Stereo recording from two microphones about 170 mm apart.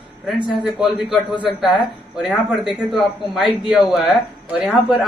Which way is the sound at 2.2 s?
5° right (ahead or behind).